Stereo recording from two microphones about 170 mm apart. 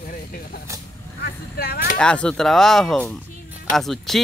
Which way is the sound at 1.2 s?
65° left (ahead or behind).